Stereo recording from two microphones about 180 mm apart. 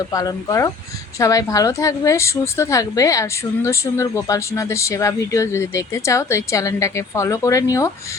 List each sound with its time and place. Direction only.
0.1 s a woman's voice: 20° left (ahead or behind)